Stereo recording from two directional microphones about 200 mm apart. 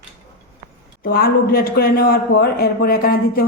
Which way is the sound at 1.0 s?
50° left (ahead or behind).